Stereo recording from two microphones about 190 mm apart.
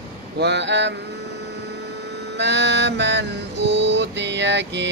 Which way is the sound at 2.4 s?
65° right (ahead or behind).